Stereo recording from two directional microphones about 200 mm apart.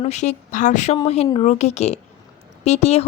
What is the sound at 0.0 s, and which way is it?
A woman's voice, 35° left (ahead or behind).